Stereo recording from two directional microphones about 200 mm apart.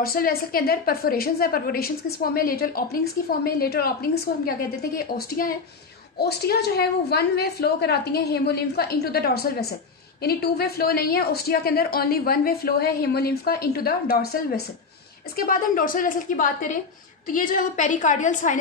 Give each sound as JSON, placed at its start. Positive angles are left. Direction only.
{"t": 0.0, "sound": "a woman's voice", "side_deg": 50}